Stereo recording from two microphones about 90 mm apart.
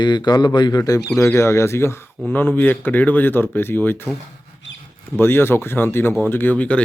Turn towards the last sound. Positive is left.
turn(degrees=15)  # may be behind; listen again after turning